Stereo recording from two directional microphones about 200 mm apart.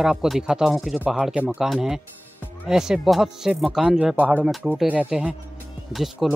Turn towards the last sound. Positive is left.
turn(degrees=0)  # may be behind; listen again after turning